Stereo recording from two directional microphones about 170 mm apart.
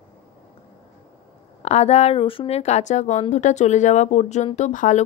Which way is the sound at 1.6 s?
40° left (ahead or behind).